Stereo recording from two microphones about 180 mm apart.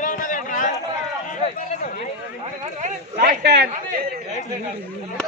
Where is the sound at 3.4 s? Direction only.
70° right (ahead or behind).